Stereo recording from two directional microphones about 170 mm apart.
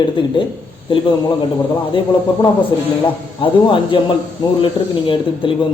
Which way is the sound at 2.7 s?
25° left (ahead or behind).